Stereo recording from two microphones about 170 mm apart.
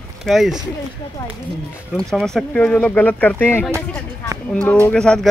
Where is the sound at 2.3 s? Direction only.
5° left (ahead or behind).